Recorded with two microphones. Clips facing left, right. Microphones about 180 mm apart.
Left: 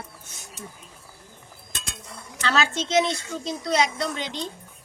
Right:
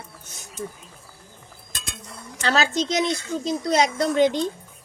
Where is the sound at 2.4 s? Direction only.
40° right (ahead or behind).